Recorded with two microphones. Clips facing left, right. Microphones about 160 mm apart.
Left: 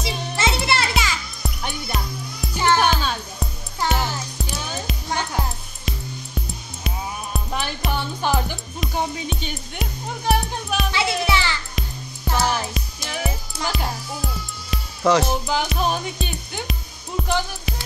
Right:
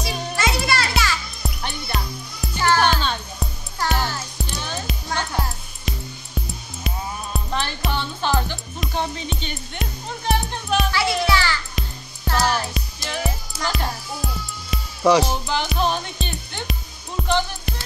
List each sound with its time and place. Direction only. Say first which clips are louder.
0.0 s music: even; 25° left (ahead or behind)
1.4 s music: left 1 dB; centre (ahead or behind)
2.5 s music: left 1 dB; 20° left (ahead or behind)
2.8 s music: even; 5° left (ahead or behind)
7.9 s music: left 1 dB; 10° left (ahead or behind)
8.7 s music: left 1 dB; centre (ahead or behind)
10.9 s music: left 2 dB; 20° left (ahead or behind)
11.8 s music: even; centre (ahead or behind)
12.3 s music: right 1 dB; 10° left (ahead or behind)
15.0 s speech: right 2 dB; 10° right (ahead or behind)
15.4 s music: even; 5° left (ahead or behind)